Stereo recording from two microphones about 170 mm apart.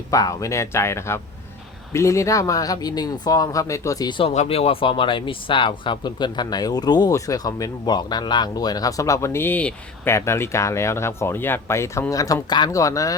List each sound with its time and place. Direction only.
0.1 s speech: 20° left (ahead or behind)
4.2 s speech: 35° left (ahead or behind); by 13.1 s 20° left (ahead or behind)